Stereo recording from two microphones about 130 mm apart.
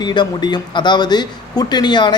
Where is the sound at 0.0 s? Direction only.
35° left (ahead or behind).